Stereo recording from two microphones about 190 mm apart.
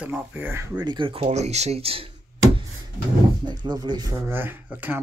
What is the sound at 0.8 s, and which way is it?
Speech, 25° right (ahead or behind).